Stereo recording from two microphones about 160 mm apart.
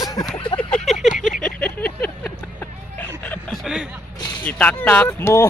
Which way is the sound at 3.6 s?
5° right (ahead or behind).